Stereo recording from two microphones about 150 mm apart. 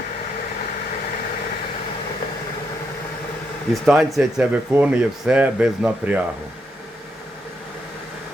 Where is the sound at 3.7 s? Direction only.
Centre (ahead or behind).